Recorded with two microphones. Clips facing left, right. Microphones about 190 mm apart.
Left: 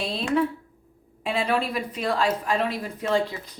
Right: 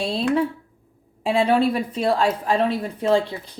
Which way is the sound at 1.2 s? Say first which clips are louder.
Right 7 dB; 30° right (ahead or behind).